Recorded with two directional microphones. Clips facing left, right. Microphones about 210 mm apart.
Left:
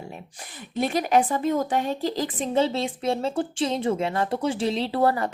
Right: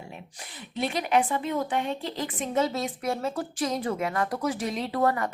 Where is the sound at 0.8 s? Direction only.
45° left (ahead or behind).